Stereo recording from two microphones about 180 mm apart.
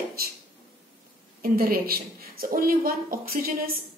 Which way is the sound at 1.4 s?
55° right (ahead or behind).